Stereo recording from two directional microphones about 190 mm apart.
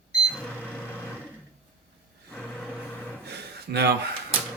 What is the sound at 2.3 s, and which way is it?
Vehicle, 5° left (ahead or behind).